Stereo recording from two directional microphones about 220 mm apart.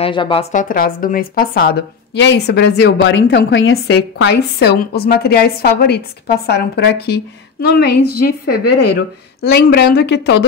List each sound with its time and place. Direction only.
0.0 s speech: 20° left (ahead or behind); by 10.3 s 50° left (ahead or behind)